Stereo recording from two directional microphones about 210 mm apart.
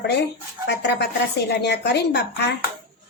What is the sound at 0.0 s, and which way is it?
A woman's voice, 50° left (ahead or behind).